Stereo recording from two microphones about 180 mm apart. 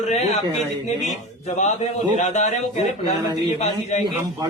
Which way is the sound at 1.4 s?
40° left (ahead or behind).